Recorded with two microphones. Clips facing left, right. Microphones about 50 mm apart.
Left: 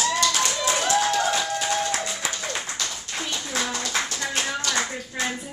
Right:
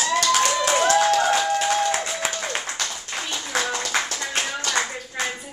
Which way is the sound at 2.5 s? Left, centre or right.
Right.